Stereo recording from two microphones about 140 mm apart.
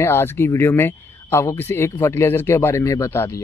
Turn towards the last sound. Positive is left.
turn(degrees=20)  # may be behind; listen again after turning